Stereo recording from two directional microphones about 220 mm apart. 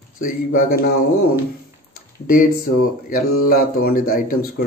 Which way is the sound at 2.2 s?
40° left (ahead or behind).